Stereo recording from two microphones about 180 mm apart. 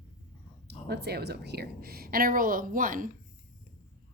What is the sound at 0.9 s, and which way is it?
A woman's voice, 65° right (ahead or behind).